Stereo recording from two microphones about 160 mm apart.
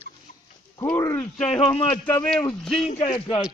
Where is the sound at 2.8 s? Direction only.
45° left (ahead or behind).